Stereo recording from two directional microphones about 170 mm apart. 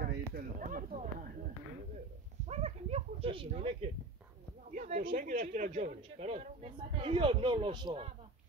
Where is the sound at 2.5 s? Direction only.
40° right (ahead or behind).